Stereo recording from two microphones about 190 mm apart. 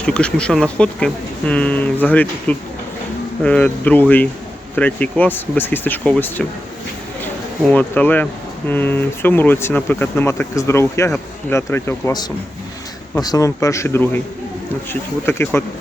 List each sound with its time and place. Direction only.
0.0 s speech: 5° left (ahead or behind)
7.7 s speech: 10° left (ahead or behind)
15.3 s speech: 15° left (ahead or behind)